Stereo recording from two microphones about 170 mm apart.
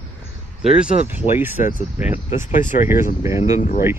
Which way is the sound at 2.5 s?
50° left (ahead or behind).